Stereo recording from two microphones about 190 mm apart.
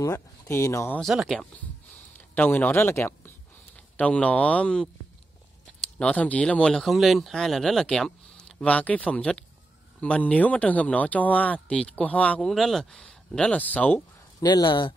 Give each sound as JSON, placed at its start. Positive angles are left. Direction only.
{"t": 0.0, "sound": "speech", "side_deg": 15}
{"t": 1.0, "sound": "speech", "side_deg": 0}
{"t": 2.1, "sound": "speech", "side_deg": 10}
{"t": 5.9, "sound": "speech", "side_deg": 5}
{"t": 14.4, "sound": "speech", "side_deg": 20}